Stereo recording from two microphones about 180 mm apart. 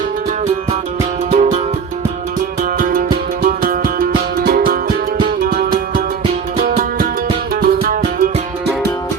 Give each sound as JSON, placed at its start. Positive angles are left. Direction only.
{"t": 1.3, "sound": "music", "side_deg": -40}
{"t": 2.7, "sound": "music", "side_deg": -50}
{"t": 7.5, "sound": "music", "side_deg": -55}